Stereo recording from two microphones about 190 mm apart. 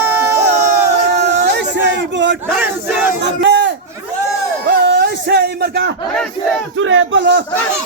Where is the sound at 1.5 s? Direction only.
65° right (ahead or behind).